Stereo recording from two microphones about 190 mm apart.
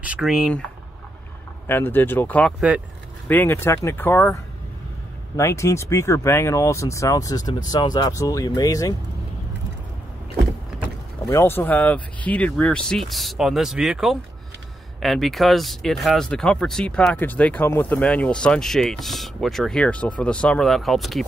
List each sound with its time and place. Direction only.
0.0 s speech: 5° right (ahead or behind)
1.7 s speech: 10° left (ahead or behind)
11.2 s speech: 15° left (ahead or behind)